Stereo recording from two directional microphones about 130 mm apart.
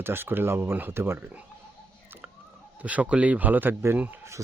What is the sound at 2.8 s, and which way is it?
Speech, 10° right (ahead or behind).